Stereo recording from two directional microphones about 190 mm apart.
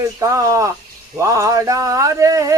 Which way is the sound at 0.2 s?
15° right (ahead or behind).